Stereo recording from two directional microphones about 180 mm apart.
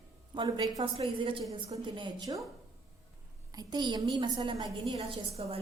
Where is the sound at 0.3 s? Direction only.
25° right (ahead or behind).